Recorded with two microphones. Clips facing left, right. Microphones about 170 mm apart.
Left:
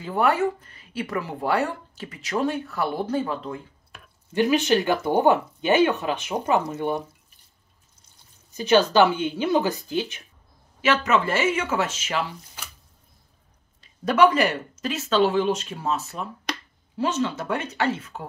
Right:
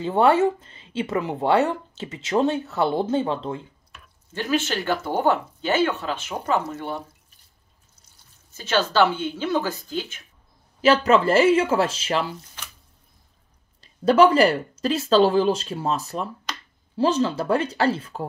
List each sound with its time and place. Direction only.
0.0 s speech: 25° right (ahead or behind)
4.3 s speech: 15° left (ahead or behind)
8.5 s speech: 15° left (ahead or behind)
10.8 s speech: 30° right (ahead or behind)
14.0 s speech: 30° right (ahead or behind)